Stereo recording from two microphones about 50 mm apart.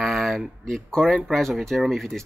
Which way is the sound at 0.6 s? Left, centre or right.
Centre.